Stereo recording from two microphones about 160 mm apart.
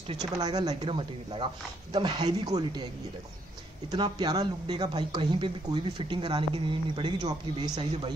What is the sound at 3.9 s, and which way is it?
Speech, 25° right (ahead or behind).